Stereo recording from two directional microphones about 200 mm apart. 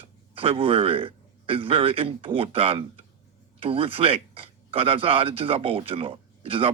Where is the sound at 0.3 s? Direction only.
30° right (ahead or behind).